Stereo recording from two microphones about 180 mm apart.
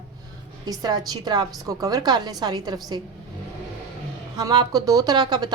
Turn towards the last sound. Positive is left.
turn(degrees=-25)  # may be behind; listen again after turning